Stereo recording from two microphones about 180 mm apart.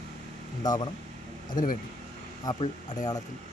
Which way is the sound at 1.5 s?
50° left (ahead or behind).